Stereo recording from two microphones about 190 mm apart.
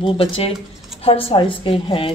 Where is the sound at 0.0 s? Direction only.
30° left (ahead or behind).